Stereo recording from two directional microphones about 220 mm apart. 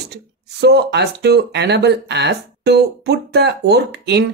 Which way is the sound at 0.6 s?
50° right (ahead or behind).